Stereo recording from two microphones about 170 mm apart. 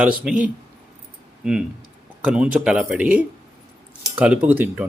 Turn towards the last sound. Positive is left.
turn(degrees=-10)  # may be behind; listen again after turning